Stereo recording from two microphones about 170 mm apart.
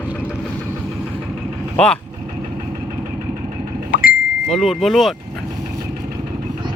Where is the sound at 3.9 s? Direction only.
55° left (ahead or behind).